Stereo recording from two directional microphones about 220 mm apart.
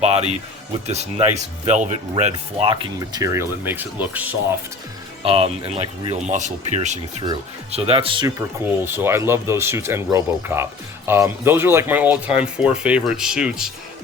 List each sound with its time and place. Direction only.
0.0 s speech: 30° right (ahead or behind); by 4.3 s 5° right (ahead or behind)
5.2 s speech: 25° right (ahead or behind); by 13.7 s 5° right (ahead or behind)